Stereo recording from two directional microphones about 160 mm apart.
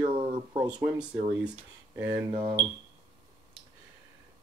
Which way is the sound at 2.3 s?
25° right (ahead or behind).